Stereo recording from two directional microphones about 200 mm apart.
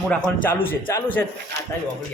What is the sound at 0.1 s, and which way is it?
A man's voice, 5° left (ahead or behind).